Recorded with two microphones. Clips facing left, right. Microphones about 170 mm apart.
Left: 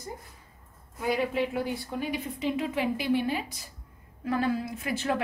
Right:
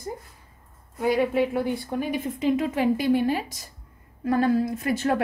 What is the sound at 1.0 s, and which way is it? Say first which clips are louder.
A woman's voice: right 6 dB; 50° right (ahead or behind).